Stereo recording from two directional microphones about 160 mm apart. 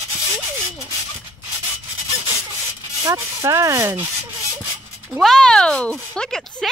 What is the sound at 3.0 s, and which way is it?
Speech, 20° right (ahead or behind).